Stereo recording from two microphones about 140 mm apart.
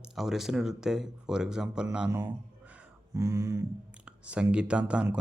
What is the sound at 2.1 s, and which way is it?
Speech, 15° right (ahead or behind).